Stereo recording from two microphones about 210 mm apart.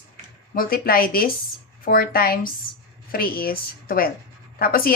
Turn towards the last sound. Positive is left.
turn(degrees=45)  # may be behind; listen again after turning